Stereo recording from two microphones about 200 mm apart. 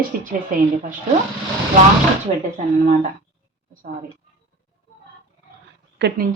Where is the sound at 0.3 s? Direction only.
40° right (ahead or behind).